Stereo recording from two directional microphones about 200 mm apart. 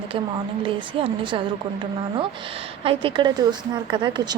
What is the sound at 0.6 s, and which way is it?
Speech, 25° right (ahead or behind).